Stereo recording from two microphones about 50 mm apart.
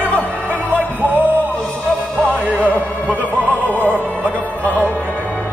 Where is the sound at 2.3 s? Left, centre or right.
Right.